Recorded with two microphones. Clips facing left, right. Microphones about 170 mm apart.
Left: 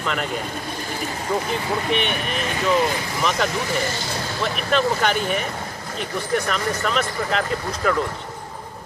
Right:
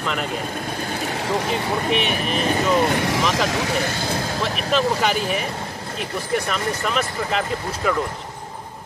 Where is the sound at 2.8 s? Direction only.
70° right (ahead or behind).